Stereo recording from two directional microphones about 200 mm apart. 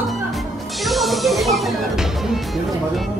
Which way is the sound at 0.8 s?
Centre (ahead or behind).